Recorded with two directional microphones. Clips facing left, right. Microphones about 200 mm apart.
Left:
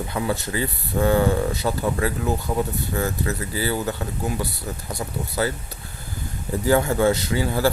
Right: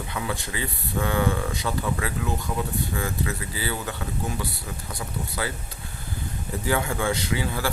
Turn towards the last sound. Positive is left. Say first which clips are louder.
# left 4 dB
turn(degrees=40)  # may be behind; listen again after turning